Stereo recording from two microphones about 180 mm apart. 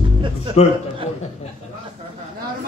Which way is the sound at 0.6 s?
35° left (ahead or behind).